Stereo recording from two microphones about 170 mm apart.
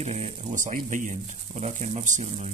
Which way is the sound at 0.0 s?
40° right (ahead or behind).